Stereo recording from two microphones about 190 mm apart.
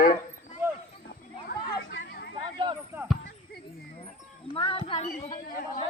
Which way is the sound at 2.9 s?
Centre (ahead or behind).